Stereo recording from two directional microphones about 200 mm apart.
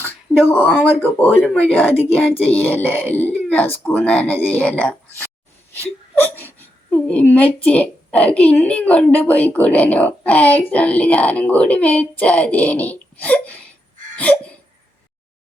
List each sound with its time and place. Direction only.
0.0 s a woman's voice: 10° left (ahead or behind)